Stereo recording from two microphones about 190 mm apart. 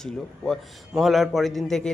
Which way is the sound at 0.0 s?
Centre (ahead or behind).